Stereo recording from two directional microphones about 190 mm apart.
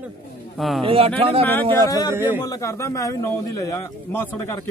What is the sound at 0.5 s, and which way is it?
Speech, centre (ahead or behind).